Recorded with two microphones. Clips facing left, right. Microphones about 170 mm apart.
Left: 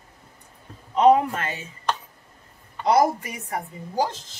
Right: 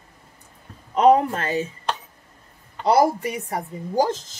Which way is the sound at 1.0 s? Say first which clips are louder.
Right 1 dB; 40° right (ahead or behind).